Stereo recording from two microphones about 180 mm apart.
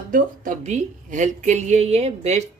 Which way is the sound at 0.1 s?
45° right (ahead or behind).